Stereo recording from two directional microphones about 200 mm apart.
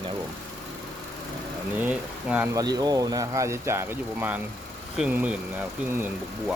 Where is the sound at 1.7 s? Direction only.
5° right (ahead or behind).